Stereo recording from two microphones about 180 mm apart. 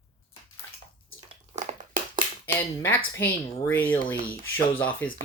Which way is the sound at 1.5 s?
45° right (ahead or behind).